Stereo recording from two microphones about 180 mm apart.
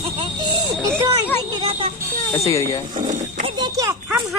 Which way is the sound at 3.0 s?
40° right (ahead or behind).